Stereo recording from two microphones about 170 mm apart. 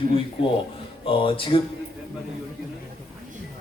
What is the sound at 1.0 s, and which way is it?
Speech, 30° left (ahead or behind).